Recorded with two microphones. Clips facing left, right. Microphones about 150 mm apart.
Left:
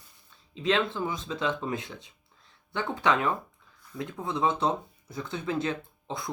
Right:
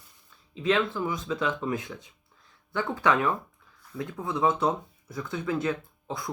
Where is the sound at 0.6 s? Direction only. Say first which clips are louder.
Right 1 dB; 25° left (ahead or behind).